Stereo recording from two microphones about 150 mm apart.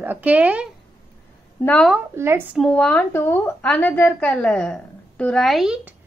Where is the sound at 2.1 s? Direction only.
15° right (ahead or behind).